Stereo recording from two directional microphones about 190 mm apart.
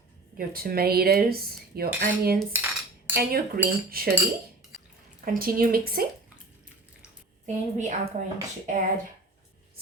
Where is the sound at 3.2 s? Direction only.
50° right (ahead or behind).